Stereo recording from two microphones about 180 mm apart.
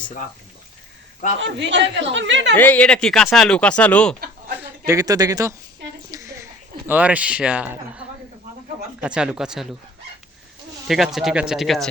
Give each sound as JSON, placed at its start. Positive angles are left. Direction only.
{"t": 1.4, "sound": "speech", "side_deg": -75}
{"t": 2.6, "sound": "speech", "side_deg": 10}
{"t": 4.9, "sound": "speech", "side_deg": -20}
{"t": 6.1, "sound": "a sound", "side_deg": -15}
{"t": 9.0, "sound": "speech", "side_deg": -5}
{"t": 10.8, "sound": "speech", "side_deg": 0}